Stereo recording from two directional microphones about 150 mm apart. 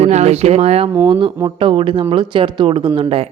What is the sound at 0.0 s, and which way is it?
A woman's voice, 45° right (ahead or behind).